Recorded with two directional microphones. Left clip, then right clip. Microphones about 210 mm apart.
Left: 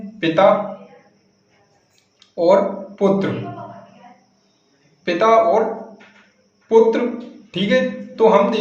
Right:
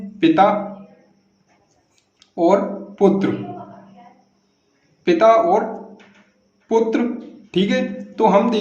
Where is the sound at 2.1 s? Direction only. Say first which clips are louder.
Left 2 dB; 40° right (ahead or behind).